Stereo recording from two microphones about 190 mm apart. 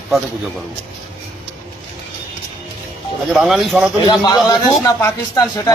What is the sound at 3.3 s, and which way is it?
Speech, centre (ahead or behind).